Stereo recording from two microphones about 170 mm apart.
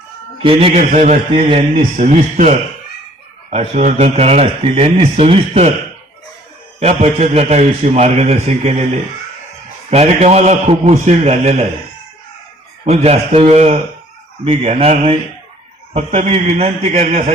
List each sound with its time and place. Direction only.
0.4 s speech: 35° right (ahead or behind)
6.7 s speech: 40° right (ahead or behind)
9.9 s speech: 40° right (ahead or behind)
12.8 s speech: 40° right (ahead or behind)